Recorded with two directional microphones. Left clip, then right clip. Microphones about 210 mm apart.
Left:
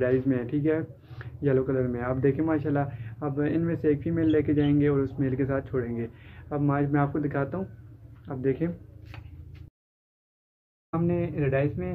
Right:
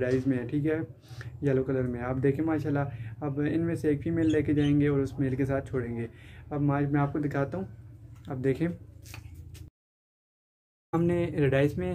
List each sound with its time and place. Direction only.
0.0 s speech: centre (ahead or behind)
8.3 s speech: 30° right (ahead or behind)
10.9 s speech: 50° right (ahead or behind)